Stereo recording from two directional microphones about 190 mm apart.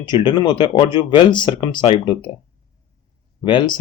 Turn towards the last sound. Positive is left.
turn(degrees=25)  # may be behind; listen again after turning